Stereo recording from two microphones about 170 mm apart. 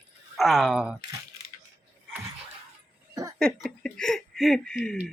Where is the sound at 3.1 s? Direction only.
20° right (ahead or behind).